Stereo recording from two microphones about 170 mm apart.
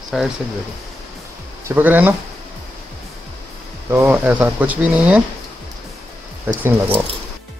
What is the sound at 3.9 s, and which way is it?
Speech, 10° right (ahead or behind).